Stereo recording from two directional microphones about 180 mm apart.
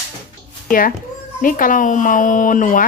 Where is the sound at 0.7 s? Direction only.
50° left (ahead or behind).